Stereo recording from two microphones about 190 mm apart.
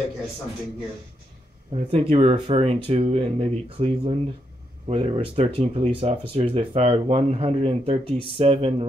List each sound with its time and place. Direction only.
1.7 s speech: 30° right (ahead or behind)